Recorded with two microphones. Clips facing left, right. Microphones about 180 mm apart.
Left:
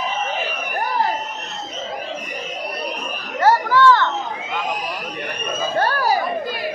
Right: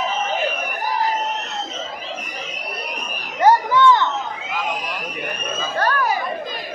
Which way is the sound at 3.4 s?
20° right (ahead or behind).